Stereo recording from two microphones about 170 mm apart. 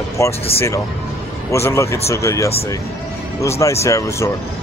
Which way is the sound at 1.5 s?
15° left (ahead or behind).